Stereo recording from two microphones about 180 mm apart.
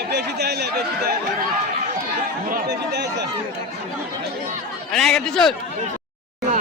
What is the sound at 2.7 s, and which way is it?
Speech, 70° right (ahead or behind).